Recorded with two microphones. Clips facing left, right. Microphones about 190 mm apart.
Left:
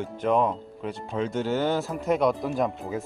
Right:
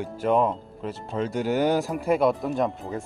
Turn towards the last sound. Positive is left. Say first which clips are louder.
# right 1 dB
turn(degrees=0)  # may be behind; listen again after turning